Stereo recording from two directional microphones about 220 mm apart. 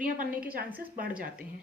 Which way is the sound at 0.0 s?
40° right (ahead or behind).